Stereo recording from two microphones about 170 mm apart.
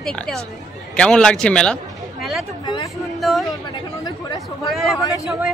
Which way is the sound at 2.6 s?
25° left (ahead or behind).